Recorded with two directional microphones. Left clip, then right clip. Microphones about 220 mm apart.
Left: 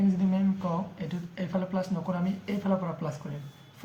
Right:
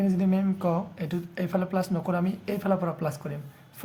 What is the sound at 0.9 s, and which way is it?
Speech, 50° right (ahead or behind).